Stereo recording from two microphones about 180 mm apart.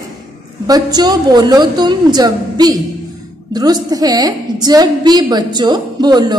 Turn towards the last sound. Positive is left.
turn(degrees=-25)  # may be behind; listen again after turning